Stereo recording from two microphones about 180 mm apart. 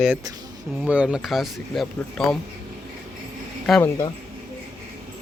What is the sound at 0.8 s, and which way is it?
Speech, 5° right (ahead or behind).